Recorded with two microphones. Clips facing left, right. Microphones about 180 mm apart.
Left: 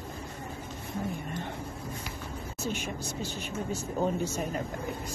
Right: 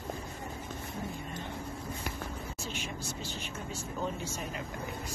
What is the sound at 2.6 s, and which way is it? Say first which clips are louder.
Speech: left 8 dB; 50° left (ahead or behind).